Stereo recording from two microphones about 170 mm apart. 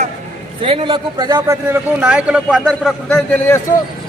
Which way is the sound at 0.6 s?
30° right (ahead or behind).